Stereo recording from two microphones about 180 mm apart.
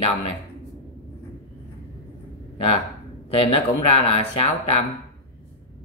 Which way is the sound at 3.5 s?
35° left (ahead or behind).